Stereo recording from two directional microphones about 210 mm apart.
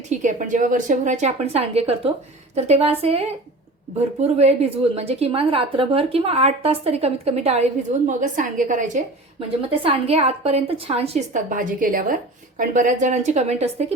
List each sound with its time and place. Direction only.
0.1 s a woman's voice: 35° right (ahead or behind)
9.6 s a woman's voice: 25° right (ahead or behind)